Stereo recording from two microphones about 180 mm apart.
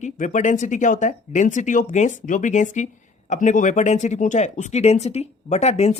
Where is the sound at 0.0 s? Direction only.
45° left (ahead or behind).